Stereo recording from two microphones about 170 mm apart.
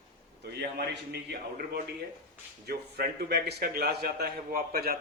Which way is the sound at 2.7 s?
65° right (ahead or behind).